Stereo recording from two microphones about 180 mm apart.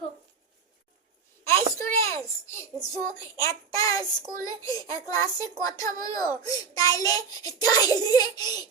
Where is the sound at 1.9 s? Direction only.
15° left (ahead or behind).